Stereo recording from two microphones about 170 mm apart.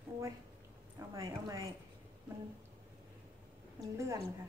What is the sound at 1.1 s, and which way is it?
Speech, 20° right (ahead or behind).